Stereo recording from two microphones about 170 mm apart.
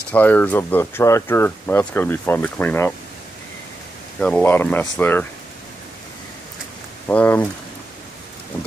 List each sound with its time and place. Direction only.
0.1 s speech: 10° left (ahead or behind)
4.2 s speech: 10° left (ahead or behind)
7.1 s speech: 10° left (ahead or behind)